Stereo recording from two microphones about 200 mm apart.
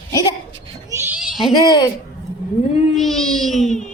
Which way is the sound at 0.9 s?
10° right (ahead or behind).